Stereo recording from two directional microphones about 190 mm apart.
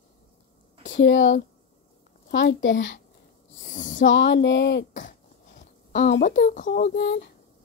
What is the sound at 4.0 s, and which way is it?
Speech, 75° left (ahead or behind).